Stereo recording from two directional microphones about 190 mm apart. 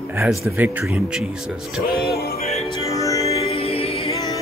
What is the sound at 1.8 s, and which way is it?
Music, 50° left (ahead or behind).